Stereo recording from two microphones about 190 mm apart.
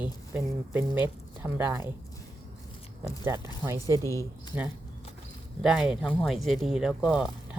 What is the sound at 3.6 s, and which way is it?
Speech, 15° right (ahead or behind).